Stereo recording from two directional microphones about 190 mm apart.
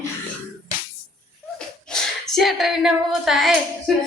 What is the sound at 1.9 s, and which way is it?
Female singing, centre (ahead or behind).